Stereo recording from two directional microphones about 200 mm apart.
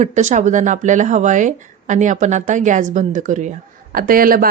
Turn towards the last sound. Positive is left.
turn(degrees=-45)  # may be behind; listen again after turning